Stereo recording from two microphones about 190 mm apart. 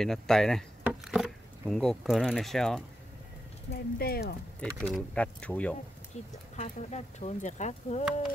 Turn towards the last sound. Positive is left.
turn(degrees=40)  # may be behind; listen again after turning